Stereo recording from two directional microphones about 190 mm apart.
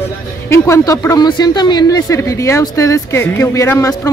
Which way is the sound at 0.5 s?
15° left (ahead or behind).